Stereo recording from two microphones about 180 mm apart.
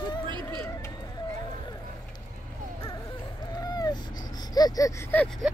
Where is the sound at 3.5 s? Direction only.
20° left (ahead or behind).